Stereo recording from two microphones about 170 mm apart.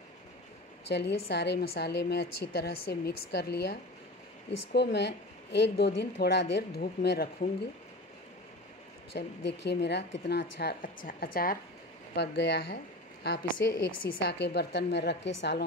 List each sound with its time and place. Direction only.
0.8 s a woman's voice: 85° left
4.7 s speech: 85° left; by 7.2 s 70° left (ahead or behind)
9.1 s a woman's voice: 85° left; by 11.5 s 60° left (ahead or behind)
12.2 s speech: 80° left